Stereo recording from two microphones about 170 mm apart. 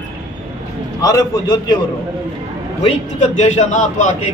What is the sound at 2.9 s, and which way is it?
A man's voice, 45° left (ahead or behind).